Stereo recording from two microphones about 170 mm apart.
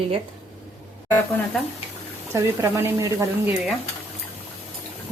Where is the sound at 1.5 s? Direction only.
Centre (ahead or behind).